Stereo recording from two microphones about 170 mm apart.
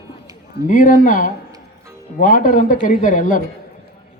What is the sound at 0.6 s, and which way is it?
A man's voice, 50° left (ahead or behind).